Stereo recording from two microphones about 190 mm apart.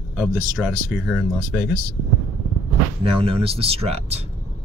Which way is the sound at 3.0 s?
30° right (ahead or behind).